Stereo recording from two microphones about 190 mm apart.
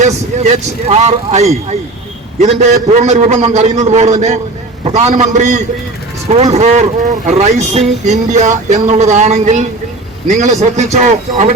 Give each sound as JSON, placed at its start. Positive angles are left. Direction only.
{"t": 0.0, "sound": "speech", "side_deg": -35}